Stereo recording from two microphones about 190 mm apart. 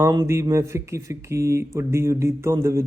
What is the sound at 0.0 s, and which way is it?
Speech, 15° right (ahead or behind).